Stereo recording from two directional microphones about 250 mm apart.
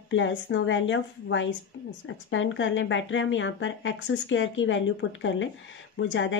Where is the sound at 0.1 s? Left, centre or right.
Left.